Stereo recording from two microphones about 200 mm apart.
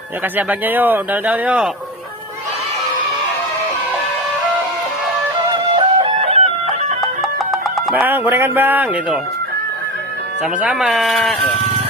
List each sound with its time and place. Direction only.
0.3 s speech: 10° right (ahead or behind)
5.7 s music: 30° right (ahead or behind)
7.0 s music: centre (ahead or behind)
10.4 s speech: 5° right (ahead or behind)